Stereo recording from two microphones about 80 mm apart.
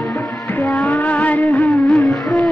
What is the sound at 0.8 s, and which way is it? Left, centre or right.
Music of bollywood, centre.